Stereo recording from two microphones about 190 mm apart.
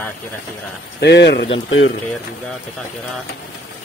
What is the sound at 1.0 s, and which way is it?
Speech, 65° left (ahead or behind).